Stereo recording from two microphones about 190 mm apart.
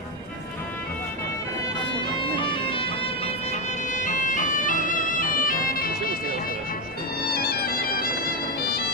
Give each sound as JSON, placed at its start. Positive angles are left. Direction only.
{"t": 2.3, "sound": "music", "side_deg": 25}
{"t": 3.2, "sound": "music", "side_deg": 40}
{"t": 7.3, "sound": "music", "side_deg": 55}